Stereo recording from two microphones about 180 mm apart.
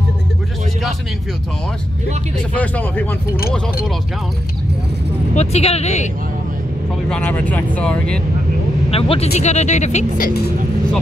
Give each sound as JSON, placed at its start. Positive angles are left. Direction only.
{"t": 2.5, "sound": "speech", "side_deg": 10}
{"t": 5.3, "sound": "speech", "side_deg": 35}
{"t": 7.1, "sound": "speech", "side_deg": 5}
{"t": 8.9, "sound": "speech", "side_deg": 30}